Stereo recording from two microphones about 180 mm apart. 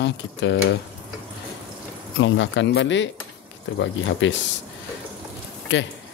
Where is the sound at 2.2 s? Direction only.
90° left.